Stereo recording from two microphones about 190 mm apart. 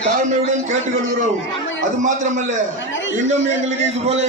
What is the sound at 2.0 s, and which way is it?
Speech, 40° right (ahead or behind).